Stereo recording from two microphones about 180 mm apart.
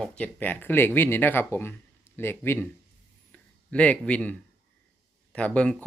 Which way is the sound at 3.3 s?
5° left (ahead or behind).